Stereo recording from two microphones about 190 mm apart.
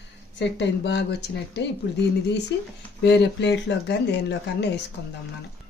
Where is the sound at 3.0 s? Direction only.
65° left (ahead or behind).